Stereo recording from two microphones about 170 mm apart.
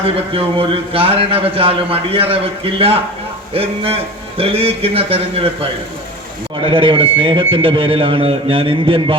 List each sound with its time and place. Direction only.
0.0 s speech: 35° right (ahead or behind)
6.6 s speech: 30° right (ahead or behind)